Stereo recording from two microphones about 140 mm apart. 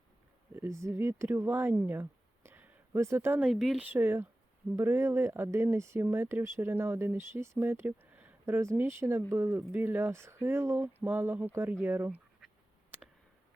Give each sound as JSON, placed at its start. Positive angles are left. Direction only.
{"t": 0.5, "sound": "speech", "side_deg": -20}
{"t": 3.5, "sound": "speech", "side_deg": 0}
{"t": 3.8, "sound": "speech", "side_deg": -15}
{"t": 12.9, "sound": "a sound", "side_deg": -10}